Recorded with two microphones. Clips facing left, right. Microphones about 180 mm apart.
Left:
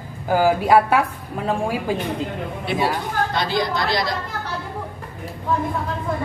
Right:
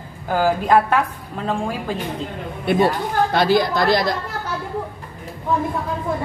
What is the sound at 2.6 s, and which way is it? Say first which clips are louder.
A woman's voice: right 5 dB; 55° right (ahead or behind).